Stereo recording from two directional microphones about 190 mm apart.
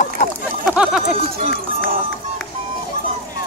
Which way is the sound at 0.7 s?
5° right (ahead or behind).